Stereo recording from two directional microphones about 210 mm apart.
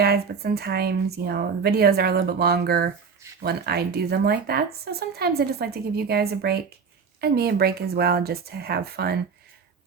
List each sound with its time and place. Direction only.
0.0 s speech: 50° right (ahead or behind)